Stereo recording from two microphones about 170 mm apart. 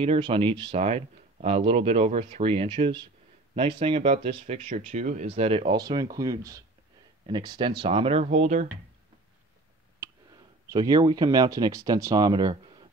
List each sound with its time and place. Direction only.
0.0 s speech: 30° right (ahead or behind)
9.9 s speech: 20° right (ahead or behind)